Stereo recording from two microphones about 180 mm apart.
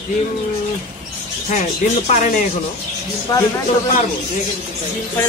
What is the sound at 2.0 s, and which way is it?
Speech, 45° left (ahead or behind).